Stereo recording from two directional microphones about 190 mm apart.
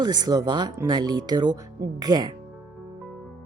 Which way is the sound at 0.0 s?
20° right (ahead or behind).